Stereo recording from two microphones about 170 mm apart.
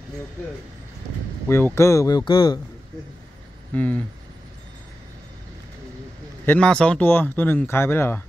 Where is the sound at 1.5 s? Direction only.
15° left (ahead or behind).